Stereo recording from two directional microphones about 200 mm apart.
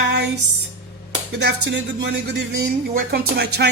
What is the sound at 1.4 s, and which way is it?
Speech, 60° right (ahead or behind).